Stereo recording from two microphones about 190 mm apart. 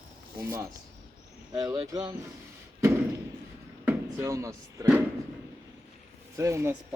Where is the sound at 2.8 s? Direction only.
15° right (ahead or behind).